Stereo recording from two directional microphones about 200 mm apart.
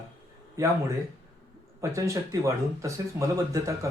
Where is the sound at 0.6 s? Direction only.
15° right (ahead or behind).